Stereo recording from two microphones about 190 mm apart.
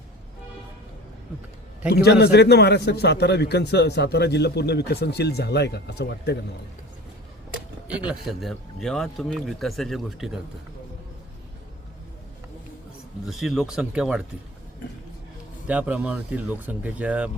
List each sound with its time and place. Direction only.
1.9 s a man's voice: 60° left (ahead or behind)
8.0 s a man's voice: centre (ahead or behind)
13.2 s a man's voice: centre (ahead or behind)
15.6 s speech: 10° right (ahead or behind)